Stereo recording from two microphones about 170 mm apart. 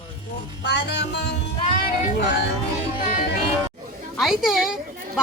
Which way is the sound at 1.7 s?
55° left (ahead or behind).